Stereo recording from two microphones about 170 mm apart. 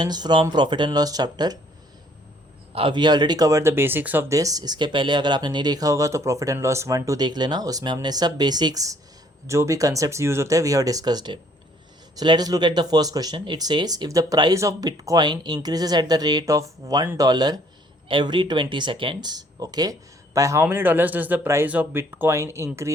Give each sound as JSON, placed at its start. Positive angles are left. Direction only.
{"t": 0.0, "sound": "speech", "side_deg": -25}
{"t": 2.7, "sound": "speech", "side_deg": -30}